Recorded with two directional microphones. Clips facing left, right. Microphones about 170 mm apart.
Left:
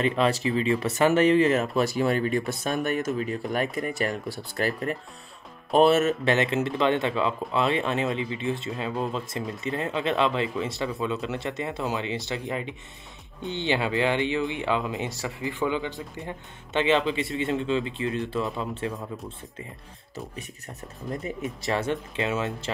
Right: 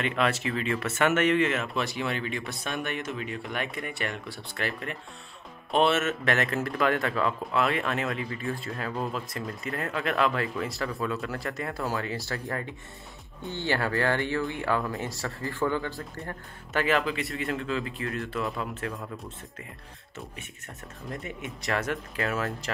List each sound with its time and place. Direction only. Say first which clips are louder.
0.0 s speech: left 4 dB; 35° left (ahead or behind)
15.0 s speech: left 2 dB; centre (ahead or behind)
15.4 s speech: left 1 dB; 15° left (ahead or behind)
21.1 s speech: left 6 dB; 30° left (ahead or behind)